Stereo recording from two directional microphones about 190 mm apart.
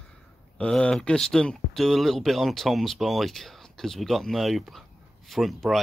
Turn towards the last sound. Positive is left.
turn(degrees=0)  # may be behind; listen again after turning